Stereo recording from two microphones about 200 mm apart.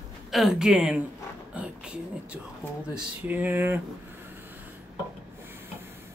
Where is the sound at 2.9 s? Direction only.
10° right (ahead or behind).